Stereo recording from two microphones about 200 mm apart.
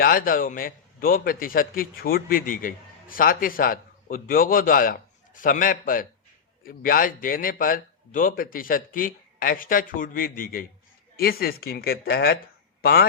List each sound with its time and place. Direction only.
0.0 s a man's voice: 45° left (ahead or behind)